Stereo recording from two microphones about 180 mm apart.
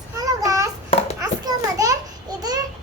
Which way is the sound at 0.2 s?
20° right (ahead or behind).